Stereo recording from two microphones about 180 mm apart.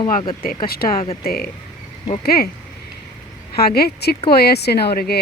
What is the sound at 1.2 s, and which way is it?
Speech, 60° left (ahead or behind).